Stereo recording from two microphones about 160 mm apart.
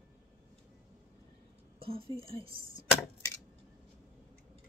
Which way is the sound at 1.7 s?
35° right (ahead or behind).